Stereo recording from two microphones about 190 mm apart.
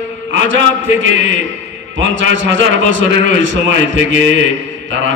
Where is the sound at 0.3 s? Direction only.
80° right.